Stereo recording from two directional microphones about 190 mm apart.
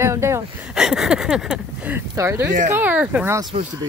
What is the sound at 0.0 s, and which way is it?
Speech, 15° right (ahead or behind).